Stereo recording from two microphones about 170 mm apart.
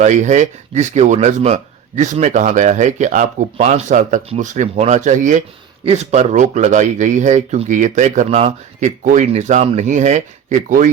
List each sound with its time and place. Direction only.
0.0 s speech: 45° right (ahead or behind)